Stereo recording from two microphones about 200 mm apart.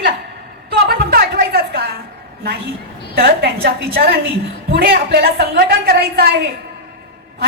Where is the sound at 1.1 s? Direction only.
50° right (ahead or behind).